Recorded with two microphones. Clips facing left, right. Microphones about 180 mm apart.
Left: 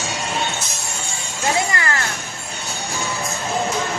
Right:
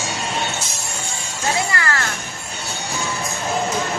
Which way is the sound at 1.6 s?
20° left (ahead or behind).